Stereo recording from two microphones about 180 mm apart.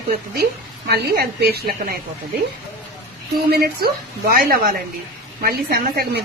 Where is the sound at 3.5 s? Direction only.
60° right (ahead or behind).